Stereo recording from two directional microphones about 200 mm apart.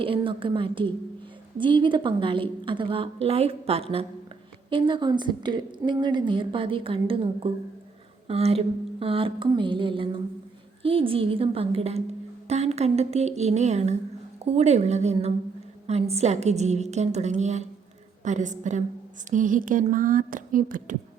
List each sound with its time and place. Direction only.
0.0 s a woman's voice: 25° right (ahead or behind); by 20.9 s 40° right (ahead or behind)